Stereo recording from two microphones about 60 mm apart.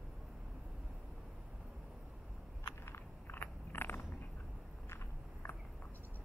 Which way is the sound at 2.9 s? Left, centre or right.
Left.